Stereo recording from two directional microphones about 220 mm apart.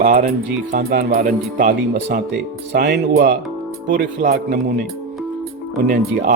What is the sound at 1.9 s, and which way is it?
Speech, 50° right (ahead or behind).